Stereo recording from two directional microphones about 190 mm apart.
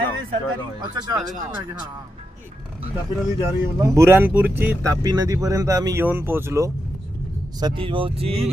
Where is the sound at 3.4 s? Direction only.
15° right (ahead or behind).